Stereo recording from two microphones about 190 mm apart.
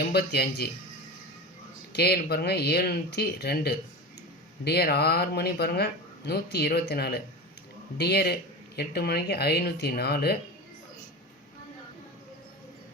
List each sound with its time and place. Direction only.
0.1 s speech: 55° left (ahead or behind)
1.9 s speech: 55° left (ahead or behind)